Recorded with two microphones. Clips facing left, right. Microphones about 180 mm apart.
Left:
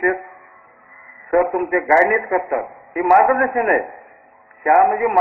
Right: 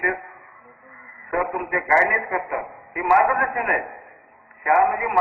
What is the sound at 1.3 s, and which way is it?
A man's voice, 40° left (ahead or behind).